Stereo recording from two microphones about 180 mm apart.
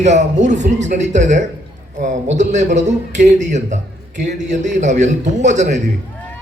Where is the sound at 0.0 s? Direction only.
40° right (ahead or behind).